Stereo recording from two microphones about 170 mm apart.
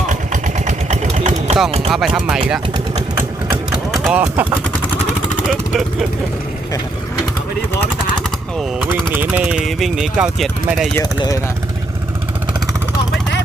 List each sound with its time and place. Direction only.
0.1 s vehicle: 45° right (ahead or behind)
1.9 s speech: centre (ahead or behind)
2.7 s vehicle: 20° right (ahead or behind)
3.9 s a sound: centre (ahead or behind)
5.5 s speech: centre (ahead or behind)
9.1 s speech: 10° right (ahead or behind)
10.9 s speech: 20° left (ahead or behind)